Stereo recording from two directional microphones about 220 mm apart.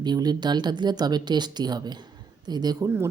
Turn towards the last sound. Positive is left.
turn(degrees=-15)  # may be behind; listen again after turning